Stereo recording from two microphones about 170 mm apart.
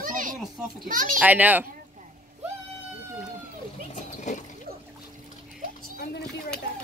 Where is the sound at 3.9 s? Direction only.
45° left (ahead or behind).